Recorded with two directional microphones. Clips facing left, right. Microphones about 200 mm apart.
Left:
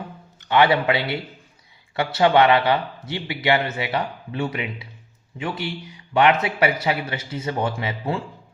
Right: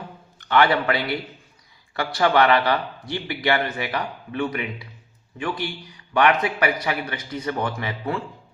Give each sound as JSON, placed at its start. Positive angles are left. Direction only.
{"t": 0.3, "sound": "a man's voice", "side_deg": 20}
{"t": 6.1, "sound": "a man's voice", "side_deg": 25}